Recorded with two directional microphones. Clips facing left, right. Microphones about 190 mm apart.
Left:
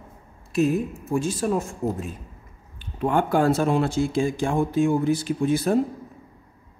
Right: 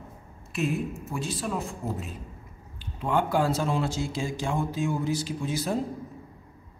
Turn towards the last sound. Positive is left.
turn(degrees=55)  # may be behind; listen again after turning